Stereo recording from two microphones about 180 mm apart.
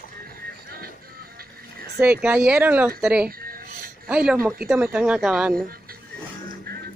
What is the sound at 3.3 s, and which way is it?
Music, 55° right (ahead or behind).